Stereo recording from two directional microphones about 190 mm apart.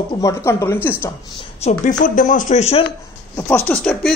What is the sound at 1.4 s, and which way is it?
Speech, 35° left (ahead or behind).